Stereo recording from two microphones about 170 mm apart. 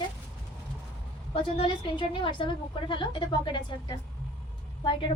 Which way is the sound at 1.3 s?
35° left (ahead or behind).